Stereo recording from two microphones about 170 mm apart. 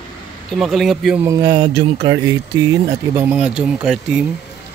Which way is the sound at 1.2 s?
20° right (ahead or behind).